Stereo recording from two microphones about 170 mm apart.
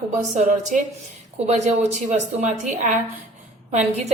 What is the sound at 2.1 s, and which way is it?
A woman's voice, 45° right (ahead or behind).